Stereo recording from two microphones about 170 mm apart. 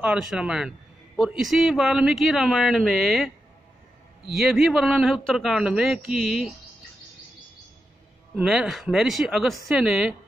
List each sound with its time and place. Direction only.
0.0 s a man's voice: 5° right (ahead or behind)
4.3 s a man's voice: centre (ahead or behind)
8.4 s a man's voice: centre (ahead or behind)